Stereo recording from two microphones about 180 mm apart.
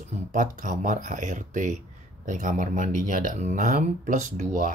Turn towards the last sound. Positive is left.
turn(degrees=-45)  # may be behind; listen again after turning